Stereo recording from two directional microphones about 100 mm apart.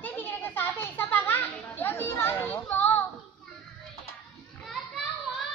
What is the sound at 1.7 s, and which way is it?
Children playing, 25° left (ahead or behind).